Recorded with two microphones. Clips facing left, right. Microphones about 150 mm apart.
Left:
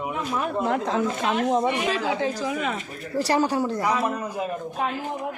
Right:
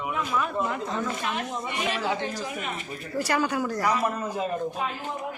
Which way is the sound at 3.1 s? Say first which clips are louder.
Left 4 dB; 30° left (ahead or behind).